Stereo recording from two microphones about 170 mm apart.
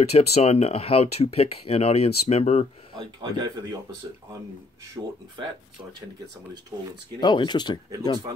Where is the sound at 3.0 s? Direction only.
25° right (ahead or behind).